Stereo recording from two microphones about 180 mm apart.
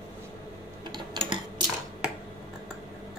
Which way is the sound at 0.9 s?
30° right (ahead or behind).